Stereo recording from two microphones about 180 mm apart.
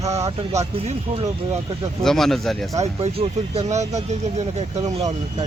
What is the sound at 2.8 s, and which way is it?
Speech, 35° right (ahead or behind).